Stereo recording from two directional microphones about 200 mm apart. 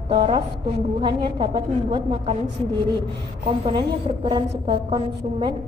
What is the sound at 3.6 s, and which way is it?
A woman's voice, 25° right (ahead or behind).